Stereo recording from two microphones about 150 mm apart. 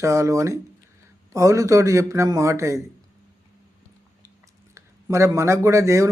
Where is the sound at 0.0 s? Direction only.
20° right (ahead or behind).